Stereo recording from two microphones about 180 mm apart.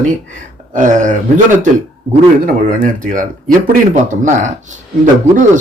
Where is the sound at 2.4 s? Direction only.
50° right (ahead or behind).